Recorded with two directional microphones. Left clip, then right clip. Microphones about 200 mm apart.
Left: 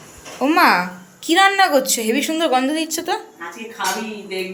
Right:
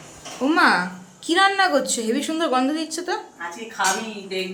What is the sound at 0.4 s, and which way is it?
A woman's voice, 10° left (ahead or behind).